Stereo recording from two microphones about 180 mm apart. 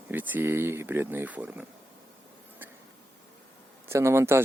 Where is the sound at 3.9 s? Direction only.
15° right (ahead or behind).